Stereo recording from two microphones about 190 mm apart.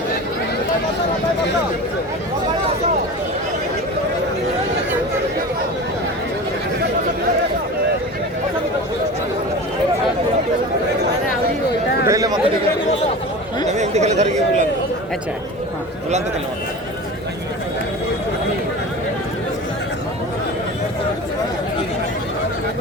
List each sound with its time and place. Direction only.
12.0 s chatter: 20° right (ahead or behind)
13.7 s chatter: 35° right (ahead or behind)